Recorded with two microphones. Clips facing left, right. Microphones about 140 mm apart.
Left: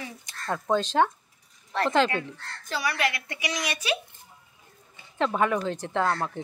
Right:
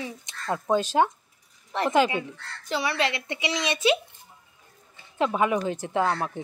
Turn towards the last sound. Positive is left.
turn(degrees=-15)  # may be behind; listen again after turning